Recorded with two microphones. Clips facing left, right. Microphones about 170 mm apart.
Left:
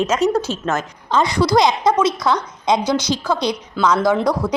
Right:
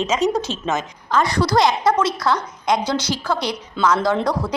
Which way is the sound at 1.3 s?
15° left (ahead or behind).